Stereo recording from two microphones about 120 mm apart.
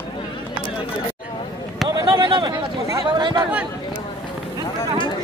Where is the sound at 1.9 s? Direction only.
40° right (ahead or behind).